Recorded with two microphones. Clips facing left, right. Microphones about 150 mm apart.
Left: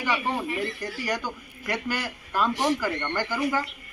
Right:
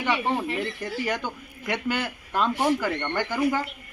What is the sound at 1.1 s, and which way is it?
A man's voice, 25° right (ahead or behind).